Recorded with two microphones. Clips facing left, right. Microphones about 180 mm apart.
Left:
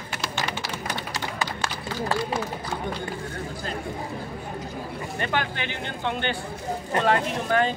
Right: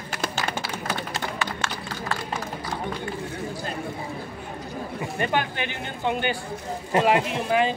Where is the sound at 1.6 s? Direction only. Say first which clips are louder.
Left 2 dB; 35° left (ahead or behind).